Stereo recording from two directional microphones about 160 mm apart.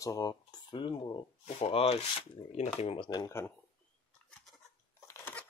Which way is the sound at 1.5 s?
40° left (ahead or behind).